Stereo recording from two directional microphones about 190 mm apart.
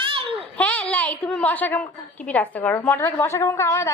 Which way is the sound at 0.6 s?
10° left (ahead or behind).